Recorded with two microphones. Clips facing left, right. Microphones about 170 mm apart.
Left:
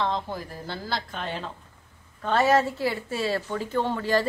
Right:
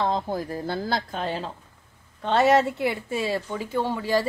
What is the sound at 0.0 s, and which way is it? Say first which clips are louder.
Speech: right 3 dB; 45° right (ahead or behind).